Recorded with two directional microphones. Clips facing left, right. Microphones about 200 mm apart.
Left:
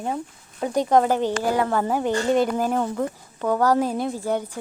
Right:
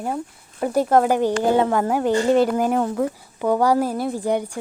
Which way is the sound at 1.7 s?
10° right (ahead or behind).